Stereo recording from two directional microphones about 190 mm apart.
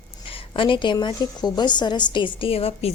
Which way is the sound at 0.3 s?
30° left (ahead or behind).